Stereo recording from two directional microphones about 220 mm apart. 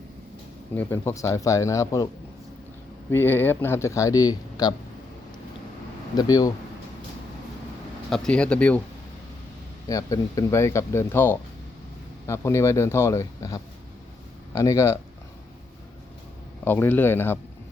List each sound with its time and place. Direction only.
0.8 s speech: 10° left (ahead or behind)
3.1 s speech: 10° left (ahead or behind)
6.1 s speech: 15° left (ahead or behind)
8.1 s speech: 5° left (ahead or behind)
9.9 s speech: 15° left (ahead or behind)
16.6 s speech: 10° left (ahead or behind)